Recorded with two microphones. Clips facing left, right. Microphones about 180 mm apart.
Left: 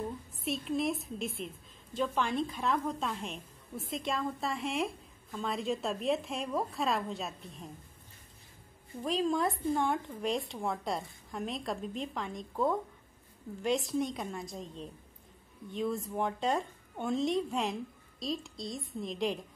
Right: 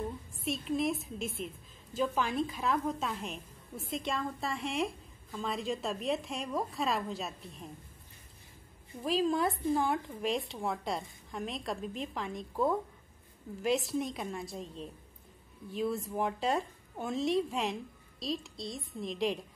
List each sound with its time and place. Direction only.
0.4 s a woman's voice: centre (ahead or behind)
9.0 s a woman's voice: centre (ahead or behind)